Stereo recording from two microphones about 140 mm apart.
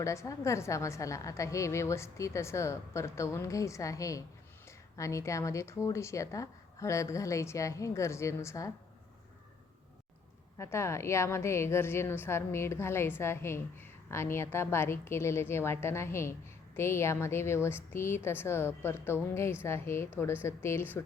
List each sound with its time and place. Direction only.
0.0 s a woman's voice: 20° left (ahead or behind)
10.6 s a woman's voice: 20° left (ahead or behind)